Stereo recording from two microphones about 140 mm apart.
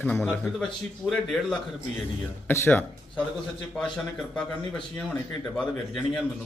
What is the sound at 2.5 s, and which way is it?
Speech, 15° left (ahead or behind).